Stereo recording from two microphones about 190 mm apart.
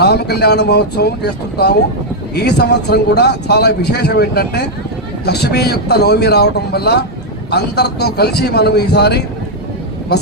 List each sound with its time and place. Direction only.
0.0 s speech: 60° left (ahead or behind)